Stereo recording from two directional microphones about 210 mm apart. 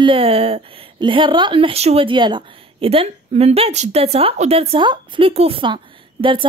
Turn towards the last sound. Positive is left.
turn(degrees=-25)  # may be behind; listen again after turning